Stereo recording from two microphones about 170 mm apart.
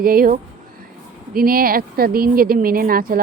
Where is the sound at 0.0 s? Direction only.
60° right (ahead or behind).